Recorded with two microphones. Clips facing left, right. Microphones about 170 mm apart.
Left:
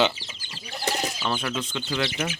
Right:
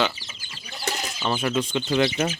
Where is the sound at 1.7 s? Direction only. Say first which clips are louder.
Right 6 dB; 25° right (ahead or behind).